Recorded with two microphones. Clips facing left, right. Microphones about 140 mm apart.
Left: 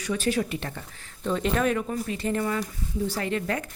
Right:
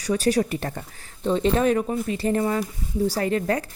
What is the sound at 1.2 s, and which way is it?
A woman's voice, 30° right (ahead or behind).